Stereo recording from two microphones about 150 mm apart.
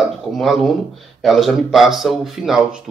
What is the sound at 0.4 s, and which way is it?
Speech, centre (ahead or behind).